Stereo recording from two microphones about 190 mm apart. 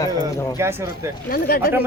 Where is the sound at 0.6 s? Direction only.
15° right (ahead or behind).